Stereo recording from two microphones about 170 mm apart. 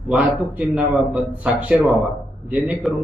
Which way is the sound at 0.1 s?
10° right (ahead or behind).